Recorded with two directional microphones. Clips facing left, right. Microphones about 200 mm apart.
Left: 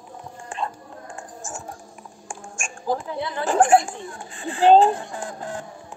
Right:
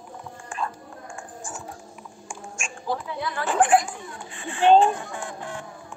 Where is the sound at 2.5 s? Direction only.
45° left (ahead or behind).